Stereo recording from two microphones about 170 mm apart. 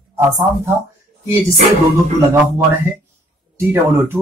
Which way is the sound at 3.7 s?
15° right (ahead or behind).